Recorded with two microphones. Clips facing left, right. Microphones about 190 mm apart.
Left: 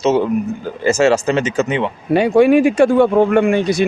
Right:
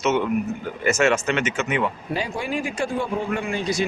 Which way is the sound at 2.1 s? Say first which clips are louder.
Left 16 dB; 65° left (ahead or behind).